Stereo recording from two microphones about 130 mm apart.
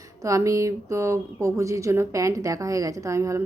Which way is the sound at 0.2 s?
25° right (ahead or behind).